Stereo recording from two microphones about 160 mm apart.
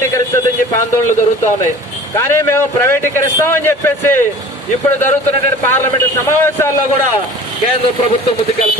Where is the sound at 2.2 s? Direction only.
15° left (ahead or behind).